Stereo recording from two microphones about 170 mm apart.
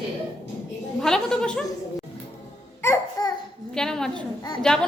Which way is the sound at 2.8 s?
20° left (ahead or behind).